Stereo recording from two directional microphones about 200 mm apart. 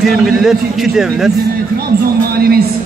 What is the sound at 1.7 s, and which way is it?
Speech, 50° right (ahead or behind).